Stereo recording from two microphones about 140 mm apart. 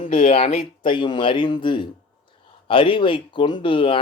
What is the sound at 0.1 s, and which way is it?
Speech, 45° left (ahead or behind).